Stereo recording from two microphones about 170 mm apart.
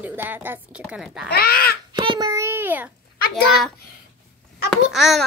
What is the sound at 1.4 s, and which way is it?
Speech, 60° left (ahead or behind).